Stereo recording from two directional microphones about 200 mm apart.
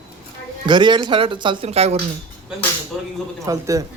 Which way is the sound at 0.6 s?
25° right (ahead or behind).